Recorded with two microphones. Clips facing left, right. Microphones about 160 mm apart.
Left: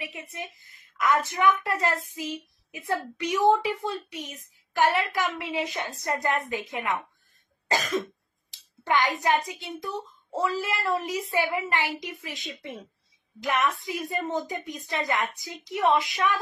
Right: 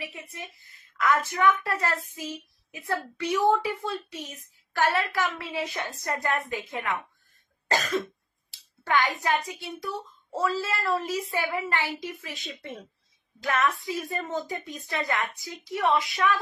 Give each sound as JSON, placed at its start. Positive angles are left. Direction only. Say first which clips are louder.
{"t": 0.0, "sound": "speech", "louder": "left 2 dB", "side_deg": 15}
{"t": 13.4, "sound": "speech", "louder": "even", "side_deg": 20}